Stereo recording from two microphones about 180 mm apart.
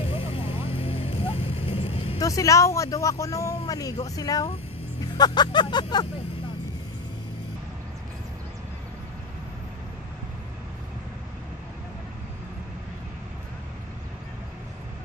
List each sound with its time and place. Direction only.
0.1 s vehicle: 30° left (ahead or behind)
2.1 s speech: 20° left (ahead or behind)